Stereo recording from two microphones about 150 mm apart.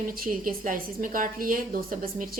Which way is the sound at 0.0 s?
70° right (ahead or behind).